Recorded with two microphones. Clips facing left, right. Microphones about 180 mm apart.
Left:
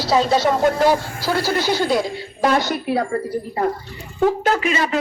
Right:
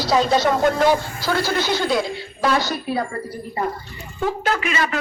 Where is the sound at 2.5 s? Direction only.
50° left (ahead or behind).